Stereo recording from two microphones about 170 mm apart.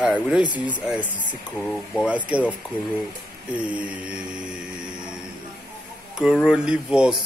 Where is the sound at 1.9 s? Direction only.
10° right (ahead or behind).